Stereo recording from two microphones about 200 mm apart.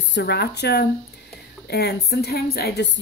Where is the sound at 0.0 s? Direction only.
60° left (ahead or behind).